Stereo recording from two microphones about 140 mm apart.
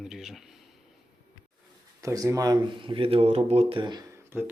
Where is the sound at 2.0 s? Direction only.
25° right (ahead or behind); by 3.8 s 50° right (ahead or behind).